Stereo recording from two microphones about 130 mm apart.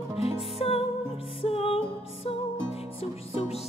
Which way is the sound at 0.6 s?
50° left (ahead or behind).